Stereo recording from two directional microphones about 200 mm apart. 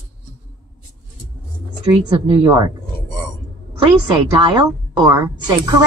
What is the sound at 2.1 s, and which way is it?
Speech, 25° right (ahead or behind).